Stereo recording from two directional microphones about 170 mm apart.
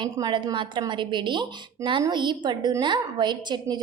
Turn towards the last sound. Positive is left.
turn(degrees=-25)  # may be behind; listen again after turning